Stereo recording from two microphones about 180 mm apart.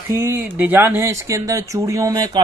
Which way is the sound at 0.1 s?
15° right (ahead or behind).